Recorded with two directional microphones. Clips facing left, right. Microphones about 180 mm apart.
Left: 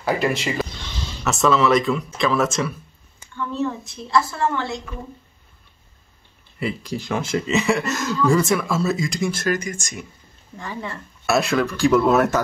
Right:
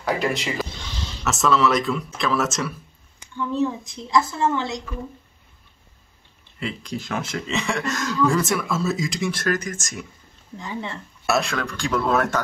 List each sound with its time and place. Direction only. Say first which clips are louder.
0.0 s speech: left 2 dB; centre (ahead or behind)
3.3 s a woman's voice: right 2 dB; 15° right (ahead or behind)
6.6 s speech: left 3 dB; 5° left (ahead or behind)
10.6 s speech: even; 20° right (ahead or behind)
11.2 s speech: left 4 dB; centre (ahead or behind)